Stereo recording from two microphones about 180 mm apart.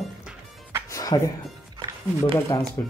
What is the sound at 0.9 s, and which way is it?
Music, 20° left (ahead or behind).